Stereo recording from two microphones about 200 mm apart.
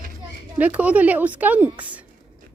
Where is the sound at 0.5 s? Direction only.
5° right (ahead or behind).